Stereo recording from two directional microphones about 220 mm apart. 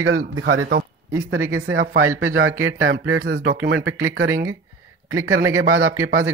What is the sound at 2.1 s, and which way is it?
Speech, 65° right (ahead or behind).